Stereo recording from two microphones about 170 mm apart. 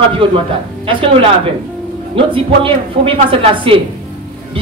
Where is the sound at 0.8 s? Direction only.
30° right (ahead or behind).